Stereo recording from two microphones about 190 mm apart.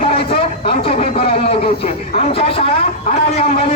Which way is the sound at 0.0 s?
30° left (ahead or behind).